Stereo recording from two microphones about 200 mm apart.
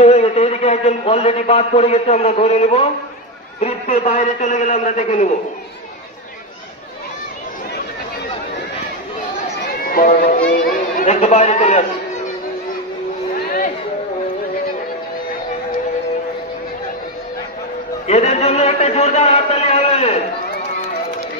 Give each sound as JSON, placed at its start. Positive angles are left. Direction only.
{"t": 0.0, "sound": "a man's voice", "side_deg": 30}
{"t": 9.8, "sound": "run", "side_deg": 45}
{"t": 10.7, "sound": "chatter", "side_deg": 40}
{"t": 18.0, "sound": "a man's voice", "side_deg": 35}